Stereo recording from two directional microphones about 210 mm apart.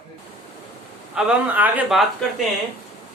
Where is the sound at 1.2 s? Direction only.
5° right (ahead or behind).